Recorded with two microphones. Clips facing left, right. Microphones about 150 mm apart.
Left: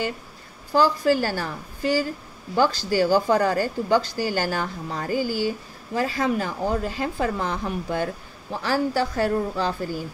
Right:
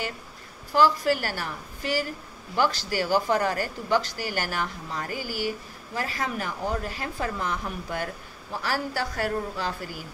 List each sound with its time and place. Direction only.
1.2 s speech: 30° left (ahead or behind)